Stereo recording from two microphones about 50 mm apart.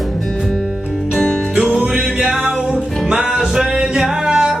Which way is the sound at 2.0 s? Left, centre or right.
Centre.